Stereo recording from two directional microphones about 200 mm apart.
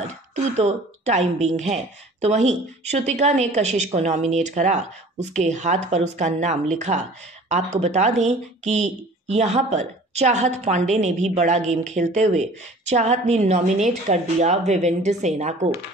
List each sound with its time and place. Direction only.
0.6 s speech: 35° right (ahead or behind)